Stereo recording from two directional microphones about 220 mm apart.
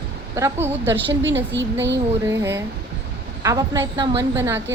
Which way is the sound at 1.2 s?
55° right (ahead or behind).